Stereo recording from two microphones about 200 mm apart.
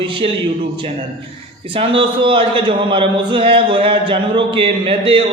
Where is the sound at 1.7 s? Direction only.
25° right (ahead or behind).